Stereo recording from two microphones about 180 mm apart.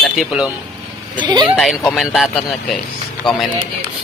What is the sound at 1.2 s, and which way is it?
Speech, 25° right (ahead or behind).